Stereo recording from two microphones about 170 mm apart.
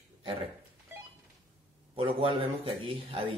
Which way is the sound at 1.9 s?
30° right (ahead or behind).